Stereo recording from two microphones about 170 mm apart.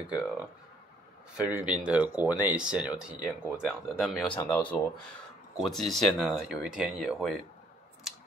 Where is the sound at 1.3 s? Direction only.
5° right (ahead or behind).